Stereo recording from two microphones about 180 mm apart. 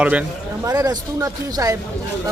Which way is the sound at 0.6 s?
20° right (ahead or behind).